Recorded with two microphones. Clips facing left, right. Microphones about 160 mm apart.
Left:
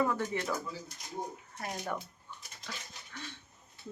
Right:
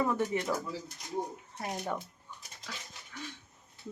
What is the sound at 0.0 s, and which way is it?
Speech, 15° right (ahead or behind).